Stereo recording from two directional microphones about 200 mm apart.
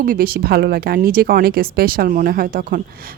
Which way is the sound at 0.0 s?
45° right (ahead or behind).